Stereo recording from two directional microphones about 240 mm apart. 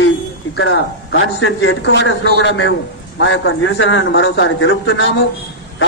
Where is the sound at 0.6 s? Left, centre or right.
Left.